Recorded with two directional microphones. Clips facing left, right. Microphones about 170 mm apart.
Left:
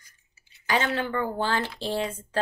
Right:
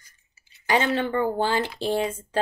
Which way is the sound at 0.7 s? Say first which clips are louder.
Right 3 dB; 20° right (ahead or behind).